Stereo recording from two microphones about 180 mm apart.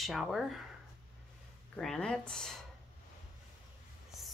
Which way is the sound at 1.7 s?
5° left (ahead or behind).